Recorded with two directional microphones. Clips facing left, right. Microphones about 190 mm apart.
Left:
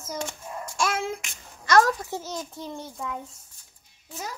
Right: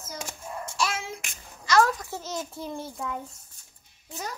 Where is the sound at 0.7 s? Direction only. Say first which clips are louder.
Left 4 dB; 50° left (ahead or behind).